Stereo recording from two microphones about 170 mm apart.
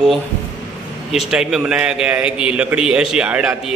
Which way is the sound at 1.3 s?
5° right (ahead or behind).